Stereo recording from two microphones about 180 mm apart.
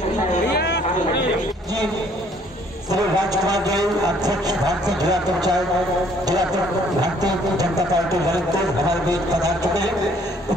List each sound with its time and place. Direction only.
0.6 s vehicle: 65° left (ahead or behind)
2.9 s a man's voice: 20° right (ahead or behind)
7.0 s a man's voice: 20° right (ahead or behind)